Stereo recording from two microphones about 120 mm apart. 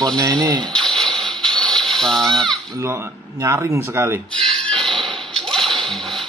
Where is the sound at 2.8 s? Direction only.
25° right (ahead or behind).